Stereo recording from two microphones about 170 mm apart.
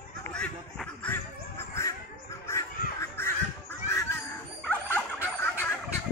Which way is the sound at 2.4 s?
15° left (ahead or behind).